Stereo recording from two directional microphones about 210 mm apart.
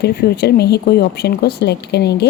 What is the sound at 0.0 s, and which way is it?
Speech, 50° left (ahead or behind).